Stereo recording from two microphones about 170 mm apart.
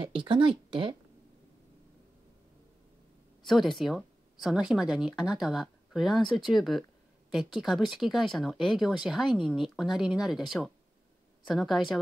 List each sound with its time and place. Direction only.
0.0 s speech: 30° right (ahead or behind)
3.4 s speech: centre (ahead or behind)